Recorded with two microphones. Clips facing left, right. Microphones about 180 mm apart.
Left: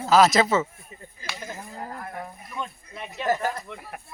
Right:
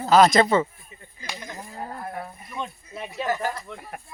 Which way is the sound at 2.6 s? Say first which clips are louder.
Right 2 dB; 5° right (ahead or behind).